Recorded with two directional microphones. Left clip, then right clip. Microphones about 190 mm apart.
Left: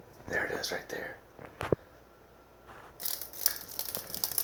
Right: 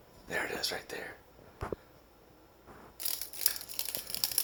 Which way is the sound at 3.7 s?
5° right (ahead or behind).